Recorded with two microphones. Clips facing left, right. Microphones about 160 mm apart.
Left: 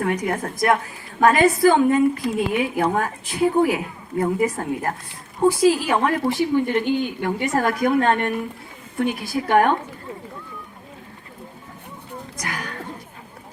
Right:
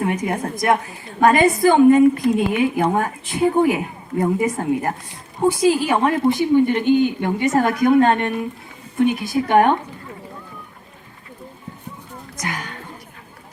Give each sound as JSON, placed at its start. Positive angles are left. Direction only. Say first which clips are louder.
{"t": 0.0, "sound": "a woman's voice", "louder": "right 1 dB", "side_deg": -20}
{"t": 12.4, "sound": "a woman's voice", "louder": "right 3 dB", "side_deg": -20}